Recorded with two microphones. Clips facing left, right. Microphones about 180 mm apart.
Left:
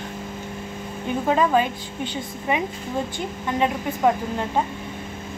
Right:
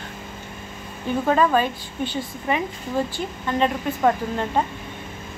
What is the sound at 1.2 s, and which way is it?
A woman's voice, 15° left (ahead or behind).